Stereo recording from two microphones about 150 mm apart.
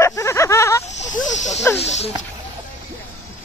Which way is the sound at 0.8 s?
55° left (ahead or behind).